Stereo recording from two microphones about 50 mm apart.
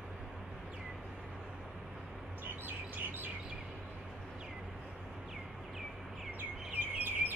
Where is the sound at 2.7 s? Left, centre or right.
Right.